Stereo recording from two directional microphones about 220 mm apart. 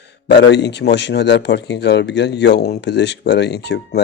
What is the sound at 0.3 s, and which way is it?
A man's voice, 50° left (ahead or behind).